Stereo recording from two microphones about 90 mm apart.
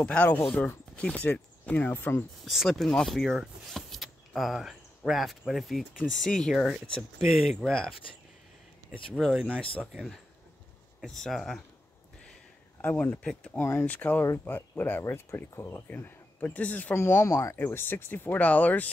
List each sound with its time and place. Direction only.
0.0 s speech: 15° left (ahead or behind)
2.4 s speech: 5° right (ahead or behind)
9.3 s speech: 10° right (ahead or behind)
11.1 s speech: 5° left (ahead or behind)
12.8 s speech: 20° left (ahead or behind)
15.9 s speech: 20° left (ahead or behind)
16.9 s speech: 30° left (ahead or behind)